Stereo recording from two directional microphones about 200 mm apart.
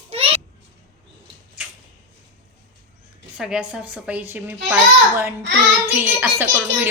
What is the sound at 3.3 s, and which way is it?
Speech, 5° right (ahead or behind).